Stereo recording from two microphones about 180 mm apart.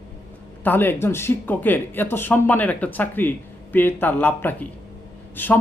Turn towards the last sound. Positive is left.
turn(degrees=10)  # may be behind; listen again after turning